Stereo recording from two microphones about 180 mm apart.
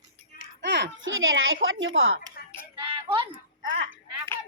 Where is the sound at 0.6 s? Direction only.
80° right.